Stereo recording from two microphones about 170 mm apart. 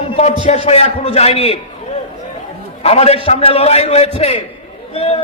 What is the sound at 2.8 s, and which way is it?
A man's voice, 35° left (ahead or behind).